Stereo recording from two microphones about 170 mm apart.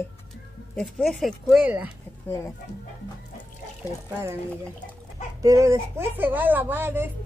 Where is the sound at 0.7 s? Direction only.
Centre (ahead or behind).